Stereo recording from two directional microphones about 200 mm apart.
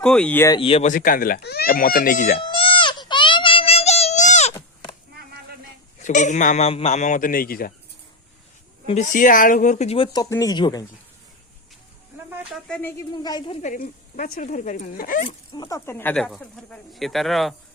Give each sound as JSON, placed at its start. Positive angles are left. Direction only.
{"t": 0.0, "sound": "speech", "side_deg": 5}
{"t": 0.6, "sound": "speech", "side_deg": 30}
{"t": 2.4, "sound": "a sound", "side_deg": 25}
{"t": 4.5, "sound": "chop", "side_deg": 25}
{"t": 6.0, "sound": "a man's voice", "side_deg": 40}
{"t": 8.9, "sound": "speech", "side_deg": 40}
{"t": 12.4, "sound": "speech", "side_deg": 0}
{"t": 13.0, "sound": "speech", "side_deg": 20}
{"t": 13.6, "sound": "a man's voice", "side_deg": 40}
{"t": 15.3, "sound": "speech", "side_deg": 20}